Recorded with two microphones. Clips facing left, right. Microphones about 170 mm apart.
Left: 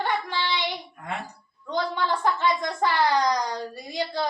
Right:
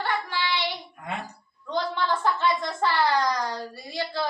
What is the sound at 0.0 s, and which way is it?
Child singing, 15° left (ahead or behind).